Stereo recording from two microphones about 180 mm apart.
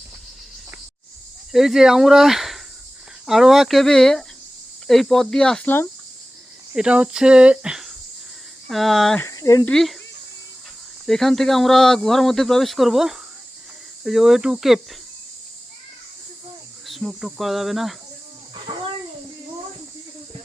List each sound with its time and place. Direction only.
1.5 s speech: centre (ahead or behind)
6.7 s speech: 5° right (ahead or behind)
9.2 s speech: 20° left (ahead or behind)
9.6 s speech: centre (ahead or behind)
11.0 s speech: centre (ahead or behind)
16.8 s speech: centre (ahead or behind)